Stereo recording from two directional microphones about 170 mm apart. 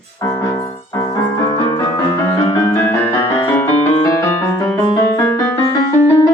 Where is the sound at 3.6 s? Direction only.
20° left (ahead or behind).